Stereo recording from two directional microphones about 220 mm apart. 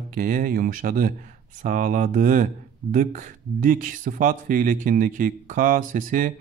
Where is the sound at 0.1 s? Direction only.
40° right (ahead or behind).